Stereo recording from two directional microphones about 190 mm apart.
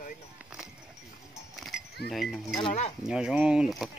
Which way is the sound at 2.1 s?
Centre (ahead or behind).